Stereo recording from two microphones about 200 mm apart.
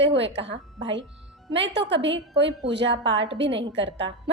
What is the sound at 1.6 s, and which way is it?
A woman's voice, 60° right (ahead or behind).